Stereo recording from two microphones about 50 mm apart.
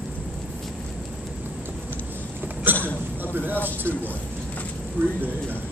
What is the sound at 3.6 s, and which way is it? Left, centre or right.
A man's voice, right.